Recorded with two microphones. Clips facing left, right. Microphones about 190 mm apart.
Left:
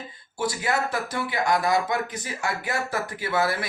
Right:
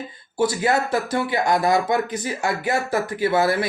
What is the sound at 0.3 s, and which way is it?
Speech, 30° right (ahead or behind).